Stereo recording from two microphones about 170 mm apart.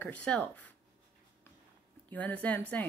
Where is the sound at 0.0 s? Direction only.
10° left (ahead or behind).